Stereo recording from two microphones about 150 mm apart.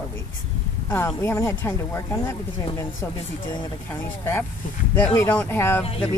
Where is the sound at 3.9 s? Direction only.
15° left (ahead or behind).